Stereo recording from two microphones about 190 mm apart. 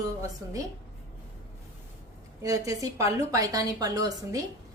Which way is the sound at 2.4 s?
15° right (ahead or behind).